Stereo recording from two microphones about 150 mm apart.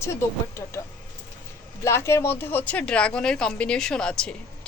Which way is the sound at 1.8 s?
20° left (ahead or behind).